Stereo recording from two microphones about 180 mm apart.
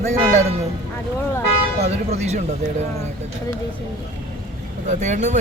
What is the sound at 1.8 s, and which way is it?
Speech, 35° right (ahead or behind).